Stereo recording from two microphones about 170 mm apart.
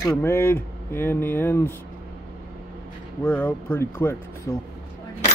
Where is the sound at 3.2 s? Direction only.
10° left (ahead or behind).